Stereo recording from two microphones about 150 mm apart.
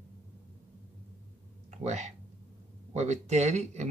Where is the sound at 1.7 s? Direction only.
50° right (ahead or behind).